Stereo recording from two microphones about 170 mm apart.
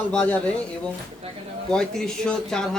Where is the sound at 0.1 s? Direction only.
5° left (ahead or behind).